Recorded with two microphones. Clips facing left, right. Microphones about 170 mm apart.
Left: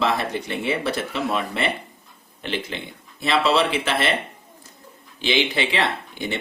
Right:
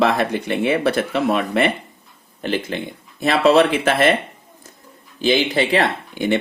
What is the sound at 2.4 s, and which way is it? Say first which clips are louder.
Speech: right 6 dB; 45° right (ahead or behind).